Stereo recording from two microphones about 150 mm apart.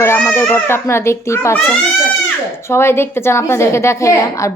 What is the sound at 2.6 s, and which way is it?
A child's voice, 15° left (ahead or behind).